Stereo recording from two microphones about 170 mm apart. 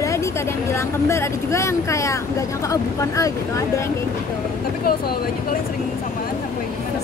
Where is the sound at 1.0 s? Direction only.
15° left (ahead or behind).